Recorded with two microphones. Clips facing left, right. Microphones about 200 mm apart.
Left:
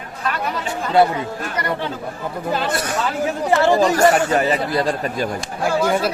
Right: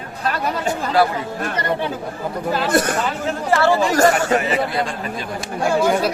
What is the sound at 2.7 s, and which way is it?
Speech, 50° right (ahead or behind).